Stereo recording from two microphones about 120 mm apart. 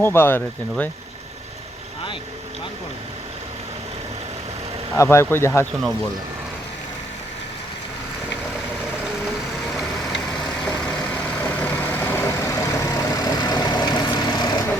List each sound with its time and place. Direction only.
0.0 s speech: 20° left (ahead or behind)
4.9 s speech: 20° left (ahead or behind)
11.1 s vehicle: 15° left (ahead or behind); by 14.5 s 35° left (ahead or behind)